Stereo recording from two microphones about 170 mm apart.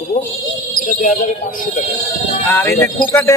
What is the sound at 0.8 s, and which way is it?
Speech, 50° left (ahead or behind).